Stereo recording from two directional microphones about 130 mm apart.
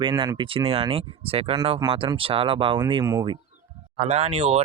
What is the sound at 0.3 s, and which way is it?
Speech, 40° right (ahead or behind).